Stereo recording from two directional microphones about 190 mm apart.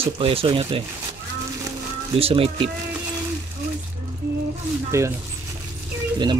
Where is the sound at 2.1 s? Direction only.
30° right (ahead or behind).